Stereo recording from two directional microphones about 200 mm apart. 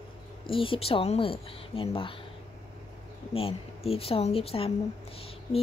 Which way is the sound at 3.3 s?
30° left (ahead or behind).